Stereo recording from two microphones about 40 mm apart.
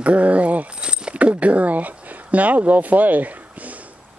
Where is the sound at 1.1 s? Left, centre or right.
Right.